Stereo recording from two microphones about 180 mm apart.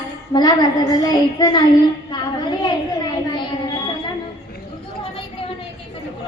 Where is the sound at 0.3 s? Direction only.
30° left (ahead or behind).